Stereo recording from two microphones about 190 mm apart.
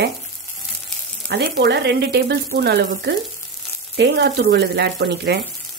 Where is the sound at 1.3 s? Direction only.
65° right (ahead or behind).